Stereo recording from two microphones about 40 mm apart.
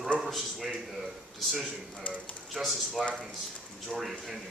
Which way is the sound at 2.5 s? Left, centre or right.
Centre.